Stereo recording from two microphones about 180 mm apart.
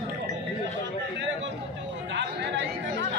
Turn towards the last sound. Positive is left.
turn(degrees=-80)